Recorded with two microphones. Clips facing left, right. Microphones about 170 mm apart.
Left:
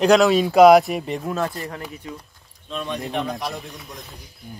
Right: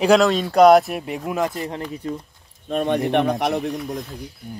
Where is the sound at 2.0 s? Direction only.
35° right (ahead or behind).